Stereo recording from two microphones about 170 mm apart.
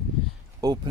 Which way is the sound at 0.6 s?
25° right (ahead or behind).